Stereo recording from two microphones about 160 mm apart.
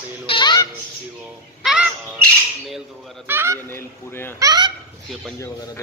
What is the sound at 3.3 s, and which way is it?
Speech, 15° right (ahead or behind).